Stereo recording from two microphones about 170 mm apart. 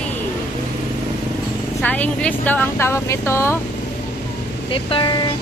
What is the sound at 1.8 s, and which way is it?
Speech, 10° left (ahead or behind).